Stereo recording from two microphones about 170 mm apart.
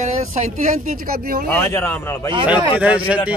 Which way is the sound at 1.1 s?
60° right (ahead or behind).